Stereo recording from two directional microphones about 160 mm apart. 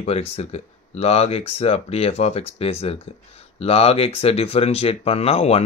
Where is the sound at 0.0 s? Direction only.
40° left (ahead or behind).